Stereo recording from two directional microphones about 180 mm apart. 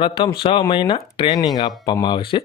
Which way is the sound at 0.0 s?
30° left (ahead or behind).